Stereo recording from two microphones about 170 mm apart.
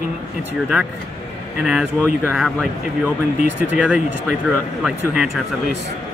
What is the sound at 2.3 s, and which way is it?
Speech, centre (ahead or behind).